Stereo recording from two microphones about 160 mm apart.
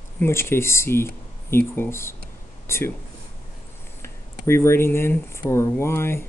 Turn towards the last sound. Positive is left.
turn(degrees=15)  # may be behind; listen again after turning